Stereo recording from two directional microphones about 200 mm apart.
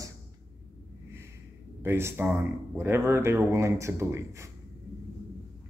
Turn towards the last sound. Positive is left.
turn(degrees=-15)  # may be behind; listen again after turning